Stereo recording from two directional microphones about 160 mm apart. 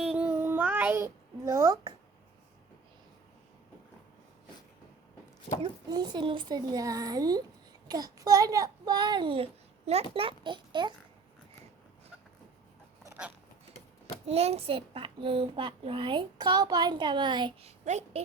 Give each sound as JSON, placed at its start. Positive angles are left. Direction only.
{"t": 0.0, "sound": "child singing", "side_deg": -5}
{"t": 5.9, "sound": "a child's voice", "side_deg": -25}
{"t": 14.3, "sound": "a child's voice", "side_deg": -40}
{"t": 17.7, "sound": "a woman's voice", "side_deg": -45}